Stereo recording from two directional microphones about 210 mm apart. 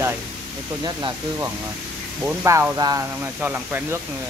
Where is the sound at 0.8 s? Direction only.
20° right (ahead or behind).